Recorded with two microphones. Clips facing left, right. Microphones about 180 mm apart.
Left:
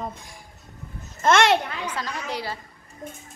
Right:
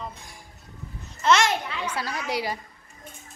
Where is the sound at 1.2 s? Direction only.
55° left (ahead or behind).